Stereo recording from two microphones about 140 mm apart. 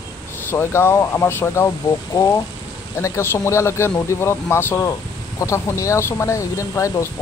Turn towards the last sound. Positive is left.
turn(degrees=20)  # may be behind; listen again after turning